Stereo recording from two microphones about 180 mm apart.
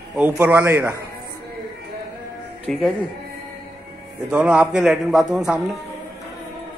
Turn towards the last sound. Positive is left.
turn(degrees=-5)  # may be behind; listen again after turning